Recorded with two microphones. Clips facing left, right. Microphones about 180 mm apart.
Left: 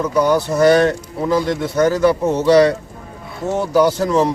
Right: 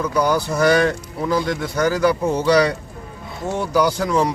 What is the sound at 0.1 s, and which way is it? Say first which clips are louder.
Speech: left 3 dB; centre (ahead or behind).